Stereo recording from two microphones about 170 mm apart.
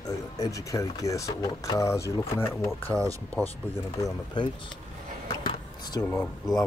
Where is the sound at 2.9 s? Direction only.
20° right (ahead or behind).